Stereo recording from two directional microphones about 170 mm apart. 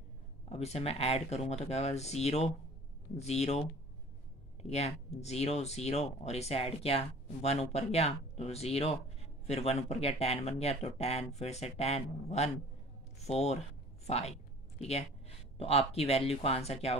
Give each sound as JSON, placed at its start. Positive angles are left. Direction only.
{"t": 0.5, "sound": "a woman's voice", "side_deg": 40}